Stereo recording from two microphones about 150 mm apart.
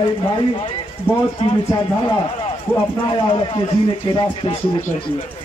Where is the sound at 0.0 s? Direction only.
35° left (ahead or behind).